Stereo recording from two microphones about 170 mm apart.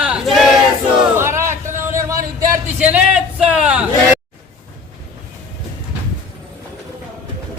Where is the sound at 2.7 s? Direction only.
5° right (ahead or behind).